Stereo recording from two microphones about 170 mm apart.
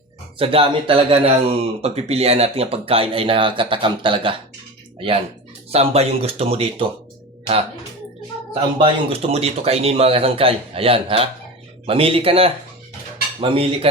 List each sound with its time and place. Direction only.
0.3 s speech: 30° right (ahead or behind)
8.8 s speech: 35° right (ahead or behind)